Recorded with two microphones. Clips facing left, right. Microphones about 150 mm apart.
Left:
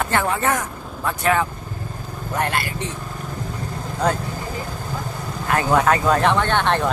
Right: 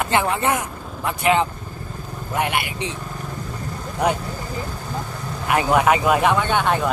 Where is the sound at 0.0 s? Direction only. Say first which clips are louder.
Right 1 dB; 15° right (ahead or behind).